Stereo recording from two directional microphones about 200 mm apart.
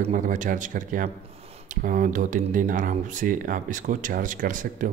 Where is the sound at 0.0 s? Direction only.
40° right (ahead or behind).